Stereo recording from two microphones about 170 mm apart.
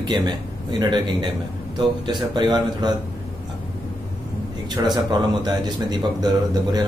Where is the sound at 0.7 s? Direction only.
25° right (ahead or behind).